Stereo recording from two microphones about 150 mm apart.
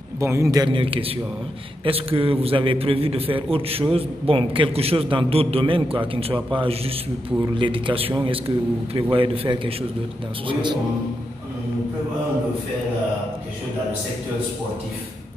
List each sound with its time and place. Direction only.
0.2 s a man's voice: 20° right (ahead or behind)
0.7 s a man's voice: 35° right (ahead or behind)